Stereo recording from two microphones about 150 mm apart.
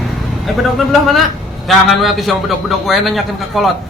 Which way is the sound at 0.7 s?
Centre (ahead or behind).